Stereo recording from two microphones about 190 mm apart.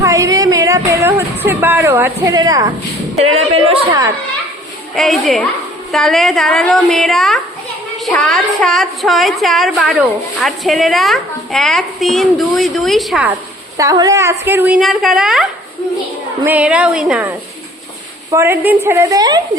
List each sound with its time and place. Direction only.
0.0 s a sound: 15° right (ahead or behind)
0.9 s speech: 15° right (ahead or behind)
3.2 s speech: 30° right (ahead or behind)
4.9 s a woman's voice: centre (ahead or behind)
13.7 s speech: 20° right (ahead or behind); by 15.4 s centre (ahead or behind)
16.5 s speech: 5° right (ahead or behind)